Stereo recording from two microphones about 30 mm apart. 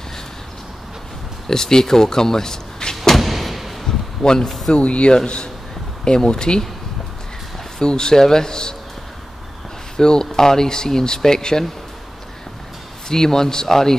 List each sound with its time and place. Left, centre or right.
1.5 s speech: centre
3.2 s thump: centre
3.8 s a sound: centre
4.5 s speech: centre
4.7 s speech: left
7.8 s speech: left
9.9 s speech: left
13.1 s speech: centre